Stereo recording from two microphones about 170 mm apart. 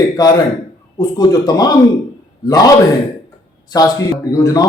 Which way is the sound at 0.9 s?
25° left (ahead or behind).